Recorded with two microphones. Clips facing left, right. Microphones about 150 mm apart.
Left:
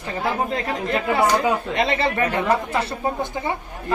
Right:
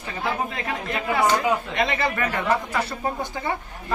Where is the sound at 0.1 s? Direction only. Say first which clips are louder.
Left 4 dB; 35° left (ahead or behind); by 3.5 s 20° left (ahead or behind).